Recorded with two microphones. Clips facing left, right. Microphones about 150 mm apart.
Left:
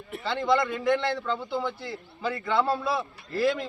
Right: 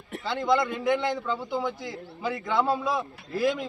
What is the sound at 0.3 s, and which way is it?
A man's voice, 10° right (ahead or behind).